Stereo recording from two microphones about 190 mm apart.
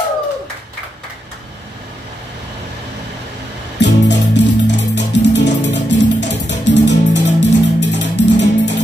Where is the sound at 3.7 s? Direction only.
65° left (ahead or behind).